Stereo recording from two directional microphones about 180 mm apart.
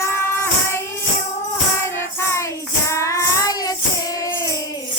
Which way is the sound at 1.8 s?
15° left (ahead or behind).